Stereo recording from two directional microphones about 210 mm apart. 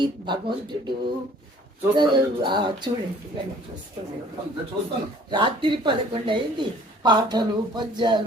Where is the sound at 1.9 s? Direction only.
20° right (ahead or behind).